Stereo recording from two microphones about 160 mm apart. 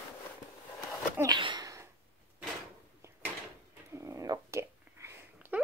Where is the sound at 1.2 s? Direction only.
30° right (ahead or behind).